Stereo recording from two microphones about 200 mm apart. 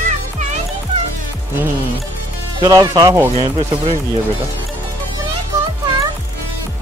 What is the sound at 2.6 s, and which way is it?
Speech, 20° right (ahead or behind).